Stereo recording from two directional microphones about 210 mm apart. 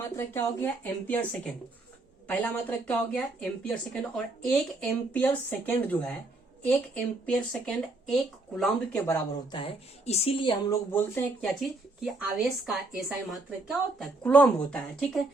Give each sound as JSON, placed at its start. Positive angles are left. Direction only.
{"t": 0.2, "sound": "a woman's voice", "side_deg": 10}
{"t": 9.5, "sound": "a woman's voice", "side_deg": 30}
{"t": 10.7, "sound": "a woman's voice", "side_deg": 10}